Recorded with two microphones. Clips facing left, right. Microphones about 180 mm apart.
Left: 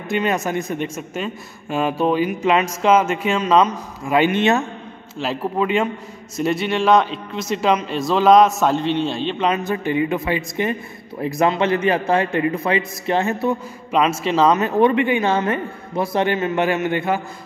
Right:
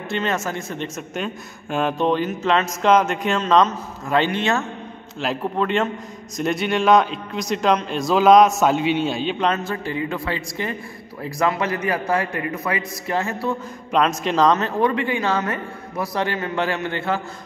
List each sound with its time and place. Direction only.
0.1 s a man's voice: 15° left (ahead or behind)
5.2 s a man's voice: centre (ahead or behind)
9.5 s a man's voice: 20° left (ahead or behind)
13.9 s a man's voice: 5° left (ahead or behind)
14.6 s a man's voice: 20° left (ahead or behind)